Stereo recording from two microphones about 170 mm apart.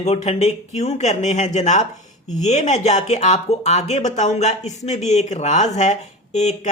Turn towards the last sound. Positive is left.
turn(degrees=40)  # may be behind; listen again after turning